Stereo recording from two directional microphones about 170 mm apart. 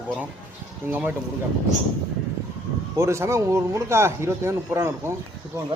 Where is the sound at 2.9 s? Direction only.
15° right (ahead or behind).